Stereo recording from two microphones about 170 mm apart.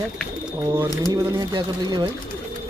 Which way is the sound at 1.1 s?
25° right (ahead or behind).